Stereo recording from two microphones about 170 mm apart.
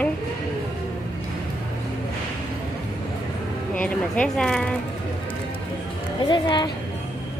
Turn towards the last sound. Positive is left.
turn(degrees=25)  # may be behind; listen again after turning